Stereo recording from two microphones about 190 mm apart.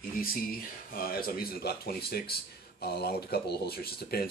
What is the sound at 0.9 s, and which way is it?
Speech, 50° left (ahead or behind).